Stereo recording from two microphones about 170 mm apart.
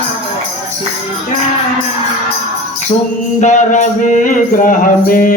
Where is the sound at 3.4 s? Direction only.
45° left (ahead or behind).